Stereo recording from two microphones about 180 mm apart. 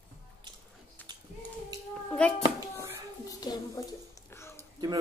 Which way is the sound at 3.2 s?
20° left (ahead or behind).